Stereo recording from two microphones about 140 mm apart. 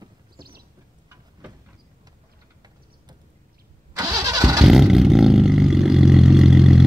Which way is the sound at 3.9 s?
25° right (ahead or behind).